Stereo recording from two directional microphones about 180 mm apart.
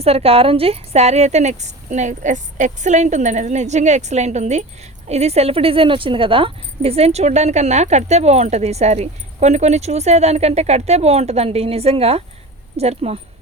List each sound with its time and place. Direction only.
0.0 s speech: 35° right (ahead or behind)